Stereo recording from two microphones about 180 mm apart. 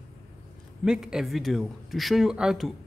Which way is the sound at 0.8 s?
5° right (ahead or behind).